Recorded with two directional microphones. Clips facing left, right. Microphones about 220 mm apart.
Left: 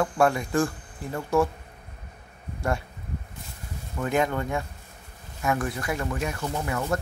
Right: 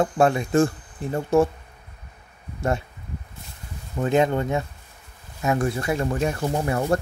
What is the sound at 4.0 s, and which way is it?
Speech, 25° right (ahead or behind).